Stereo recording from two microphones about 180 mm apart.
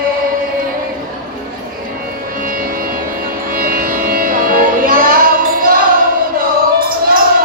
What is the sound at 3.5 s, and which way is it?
Music, 50° right (ahead or behind).